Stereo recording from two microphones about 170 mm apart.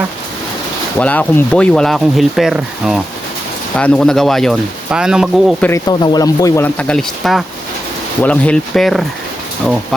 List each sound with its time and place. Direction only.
0.9 s speech: 10° left (ahead or behind)
5.5 s speech: 10° left (ahead or behind)
5.9 s speech: 25° left (ahead or behind)
6.7 s speech: 5° left (ahead or behind)